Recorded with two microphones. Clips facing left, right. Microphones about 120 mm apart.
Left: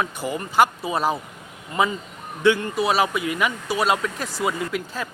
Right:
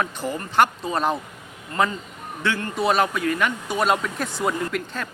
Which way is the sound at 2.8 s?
5° left (ahead or behind).